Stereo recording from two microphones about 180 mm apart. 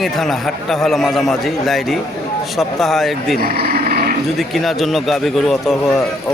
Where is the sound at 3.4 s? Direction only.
55° right (ahead or behind).